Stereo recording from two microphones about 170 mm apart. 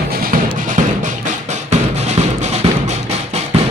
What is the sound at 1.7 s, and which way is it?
Music, 40° right (ahead or behind).